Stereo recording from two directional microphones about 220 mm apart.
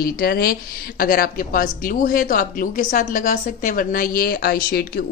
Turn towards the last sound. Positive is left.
turn(degrees=45)  # may be behind; listen again after turning